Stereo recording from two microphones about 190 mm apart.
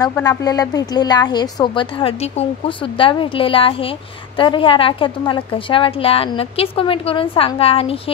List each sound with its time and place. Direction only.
0.1 s a woman's voice: 15° left (ahead or behind)